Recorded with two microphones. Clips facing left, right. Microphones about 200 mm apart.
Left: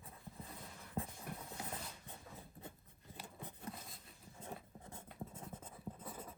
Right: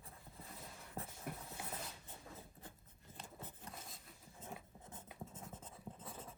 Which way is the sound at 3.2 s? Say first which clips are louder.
Left 1 dB; 15° left (ahead or behind).